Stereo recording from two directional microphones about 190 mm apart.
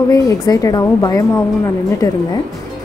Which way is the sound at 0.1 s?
20° left (ahead or behind).